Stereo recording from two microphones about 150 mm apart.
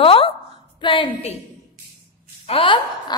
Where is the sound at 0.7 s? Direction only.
35° left (ahead or behind).